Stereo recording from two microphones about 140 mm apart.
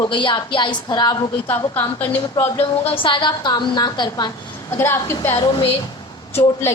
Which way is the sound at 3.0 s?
35° left (ahead or behind).